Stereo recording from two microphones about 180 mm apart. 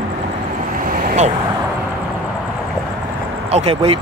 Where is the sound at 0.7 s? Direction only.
50° right (ahead or behind).